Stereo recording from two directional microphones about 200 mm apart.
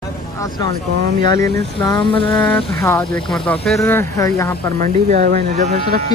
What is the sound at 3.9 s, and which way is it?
Speech, 15° left (ahead or behind).